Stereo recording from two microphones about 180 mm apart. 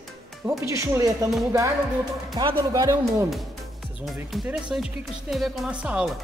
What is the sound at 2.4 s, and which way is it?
Speech, 20° right (ahead or behind).